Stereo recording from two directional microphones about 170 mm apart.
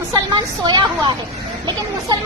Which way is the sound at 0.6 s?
25° right (ahead or behind).